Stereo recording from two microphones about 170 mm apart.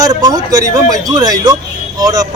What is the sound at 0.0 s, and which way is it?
A man's voice, 20° right (ahead or behind).